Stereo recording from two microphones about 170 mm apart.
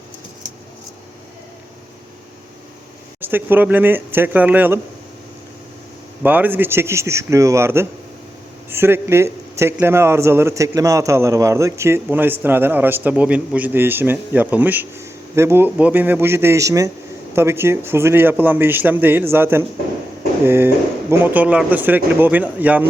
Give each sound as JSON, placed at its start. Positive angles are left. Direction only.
{"t": 3.2, "sound": "a man's voice", "side_deg": -10}
{"t": 6.2, "sound": "a man's voice", "side_deg": -10}